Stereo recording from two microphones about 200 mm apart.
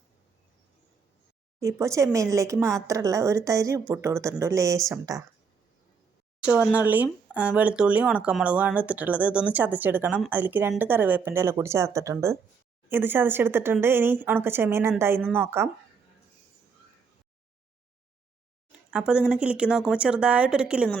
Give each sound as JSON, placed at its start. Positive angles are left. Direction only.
{"t": 1.6, "sound": "speech", "side_deg": -15}
{"t": 6.4, "sound": "speech", "side_deg": -5}
{"t": 18.9, "sound": "speech", "side_deg": -5}